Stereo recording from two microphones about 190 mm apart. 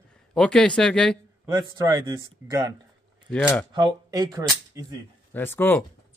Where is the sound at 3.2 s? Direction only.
5° left (ahead or behind).